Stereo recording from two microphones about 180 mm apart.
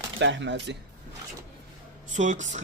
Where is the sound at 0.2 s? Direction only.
85° right.